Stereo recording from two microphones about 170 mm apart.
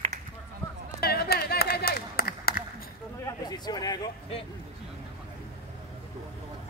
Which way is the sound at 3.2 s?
25° left (ahead or behind).